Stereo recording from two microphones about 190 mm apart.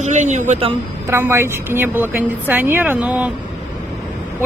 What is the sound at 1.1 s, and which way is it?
A woman's voice, 15° right (ahead or behind).